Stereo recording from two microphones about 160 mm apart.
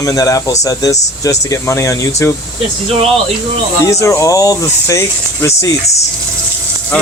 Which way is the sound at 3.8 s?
20° left (ahead or behind).